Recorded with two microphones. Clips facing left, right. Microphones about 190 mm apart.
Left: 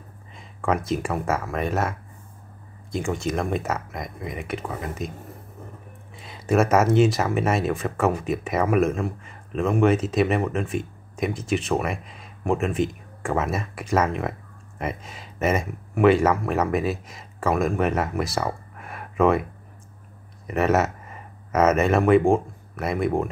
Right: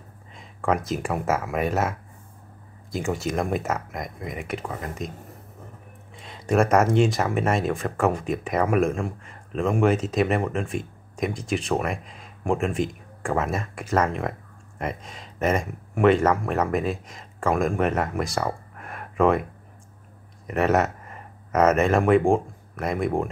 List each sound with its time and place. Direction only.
0.3 s speech: centre (ahead or behind)
6.1 s speech: 5° left (ahead or behind)
20.4 s speech: centre (ahead or behind)